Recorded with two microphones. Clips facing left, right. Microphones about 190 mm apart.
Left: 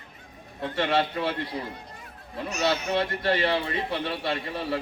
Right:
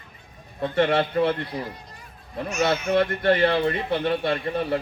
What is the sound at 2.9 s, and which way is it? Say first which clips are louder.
A man's voice: right 5 dB; 55° right (ahead or behind).